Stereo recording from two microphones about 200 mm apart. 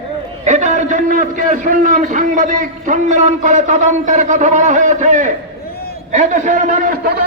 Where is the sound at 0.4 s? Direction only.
35° right (ahead or behind).